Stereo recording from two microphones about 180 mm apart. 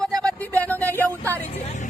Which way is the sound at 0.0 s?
5° left (ahead or behind).